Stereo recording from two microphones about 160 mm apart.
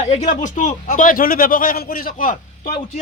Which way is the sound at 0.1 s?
50° left (ahead or behind).